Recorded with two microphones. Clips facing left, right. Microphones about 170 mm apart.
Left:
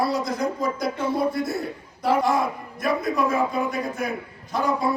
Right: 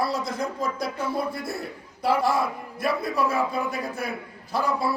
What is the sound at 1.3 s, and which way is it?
Speech, 30° right (ahead or behind).